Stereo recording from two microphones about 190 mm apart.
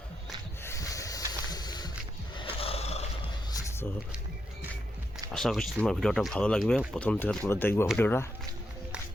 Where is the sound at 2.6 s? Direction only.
30° left (ahead or behind).